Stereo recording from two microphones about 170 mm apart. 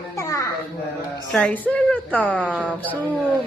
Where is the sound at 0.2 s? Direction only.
20° left (ahead or behind).